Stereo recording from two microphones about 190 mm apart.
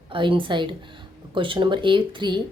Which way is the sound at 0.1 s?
25° right (ahead or behind).